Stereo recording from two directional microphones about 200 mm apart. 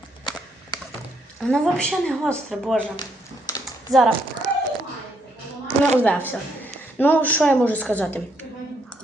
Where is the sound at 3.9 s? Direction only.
15° right (ahead or behind).